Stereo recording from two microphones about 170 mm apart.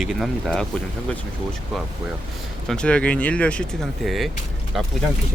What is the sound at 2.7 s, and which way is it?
Speech, 5° left (ahead or behind).